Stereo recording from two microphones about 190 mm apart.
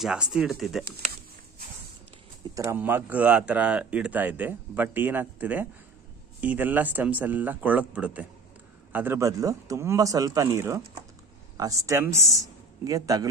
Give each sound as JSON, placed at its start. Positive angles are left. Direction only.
{"t": 0.0, "sound": "speech", "side_deg": -5}
{"t": 2.5, "sound": "a man's voice", "side_deg": -15}